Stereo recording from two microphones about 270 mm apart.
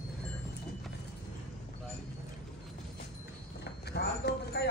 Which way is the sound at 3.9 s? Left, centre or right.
Left.